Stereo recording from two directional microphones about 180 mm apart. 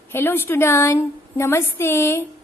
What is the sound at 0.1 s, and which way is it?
A woman's voice, 10° left (ahead or behind).